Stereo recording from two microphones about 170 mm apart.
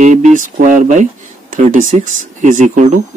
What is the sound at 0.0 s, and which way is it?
Speech, 45° right (ahead or behind).